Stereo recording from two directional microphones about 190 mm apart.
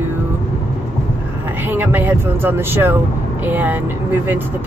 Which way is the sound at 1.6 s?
10° right (ahead or behind).